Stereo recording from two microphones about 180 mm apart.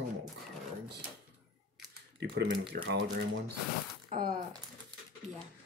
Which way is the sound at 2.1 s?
85° right.